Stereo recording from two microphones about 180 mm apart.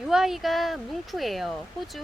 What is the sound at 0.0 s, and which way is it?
Speech, 5° right (ahead or behind).